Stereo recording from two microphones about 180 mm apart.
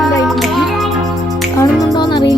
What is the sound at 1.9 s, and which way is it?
Music, 25° left (ahead or behind).